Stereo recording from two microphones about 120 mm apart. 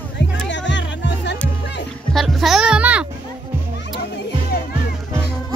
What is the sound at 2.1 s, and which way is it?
Music, centre (ahead or behind).